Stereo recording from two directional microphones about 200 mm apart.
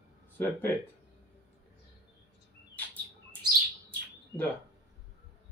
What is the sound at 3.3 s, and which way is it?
Bird, 10° left (ahead or behind).